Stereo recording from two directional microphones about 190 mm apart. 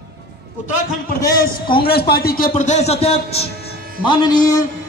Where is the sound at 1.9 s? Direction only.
55° left (ahead or behind); by 3.4 s 30° left (ahead or behind).